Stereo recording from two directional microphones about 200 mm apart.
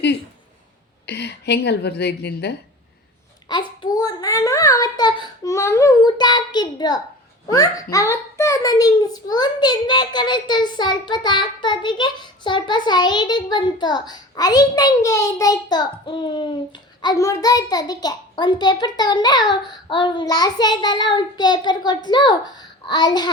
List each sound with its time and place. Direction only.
1.0 s speech: 55° left (ahead or behind)
3.5 s a child's voice: 20° left (ahead or behind)